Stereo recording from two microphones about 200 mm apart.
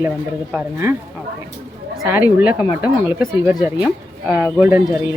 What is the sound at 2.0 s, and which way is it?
Speech, 10° right (ahead or behind).